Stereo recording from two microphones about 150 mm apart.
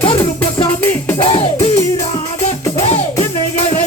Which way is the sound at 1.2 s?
35° left (ahead or behind).